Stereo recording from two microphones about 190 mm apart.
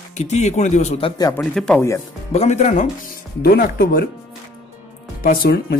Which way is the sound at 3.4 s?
55° left (ahead or behind).